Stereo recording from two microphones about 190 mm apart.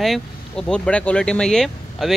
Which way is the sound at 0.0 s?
Centre (ahead or behind).